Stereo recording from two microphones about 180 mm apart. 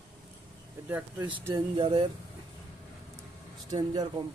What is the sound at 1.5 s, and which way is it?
Speech, 30° right (ahead or behind).